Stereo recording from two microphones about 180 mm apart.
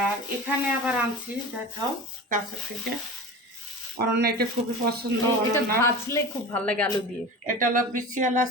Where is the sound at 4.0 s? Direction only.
60° right (ahead or behind).